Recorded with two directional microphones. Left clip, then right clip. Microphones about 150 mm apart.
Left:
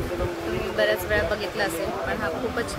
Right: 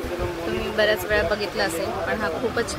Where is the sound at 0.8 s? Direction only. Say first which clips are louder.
Right 2 dB; 90° right.